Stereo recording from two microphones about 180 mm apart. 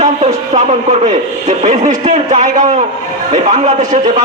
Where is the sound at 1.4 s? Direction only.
40° right (ahead or behind).